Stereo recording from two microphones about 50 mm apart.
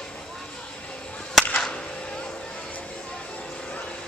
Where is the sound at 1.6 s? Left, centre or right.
Centre.